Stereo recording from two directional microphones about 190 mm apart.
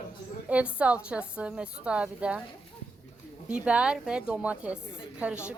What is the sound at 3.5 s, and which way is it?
Speech, 5° right (ahead or behind).